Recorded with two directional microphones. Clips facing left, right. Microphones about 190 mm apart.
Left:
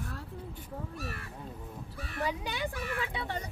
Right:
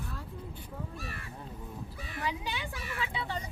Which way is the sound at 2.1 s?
50° left (ahead or behind).